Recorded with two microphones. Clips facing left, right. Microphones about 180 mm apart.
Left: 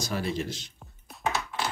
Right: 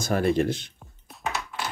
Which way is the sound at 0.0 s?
55° right (ahead or behind).